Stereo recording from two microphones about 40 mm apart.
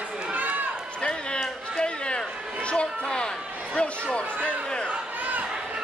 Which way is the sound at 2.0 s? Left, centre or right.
Left.